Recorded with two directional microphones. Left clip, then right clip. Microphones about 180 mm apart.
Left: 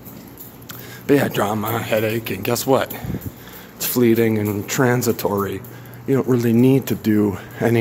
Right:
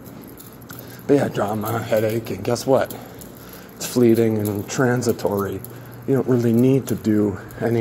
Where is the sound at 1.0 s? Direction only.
20° left (ahead or behind).